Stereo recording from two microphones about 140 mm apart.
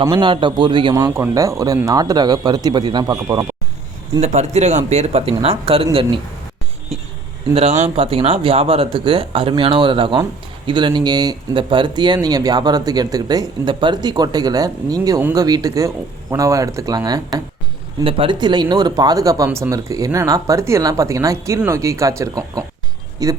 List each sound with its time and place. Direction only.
0.0 s speech: 35° right (ahead or behind)
4.2 s speech: 55° right (ahead or behind)
7.5 s speech: 45° right (ahead or behind); by 19.5 s 25° right (ahead or behind)
19.5 s speech: 15° right (ahead or behind)
19.7 s speech: 25° right (ahead or behind)